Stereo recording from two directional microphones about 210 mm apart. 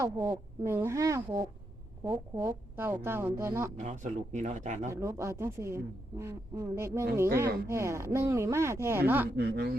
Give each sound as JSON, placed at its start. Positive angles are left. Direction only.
{"t": 0.0, "sound": "speech", "side_deg": -15}
{"t": 3.8, "sound": "speech", "side_deg": -35}
{"t": 4.9, "sound": "speech", "side_deg": -15}
{"t": 9.3, "sound": "speech", "side_deg": -50}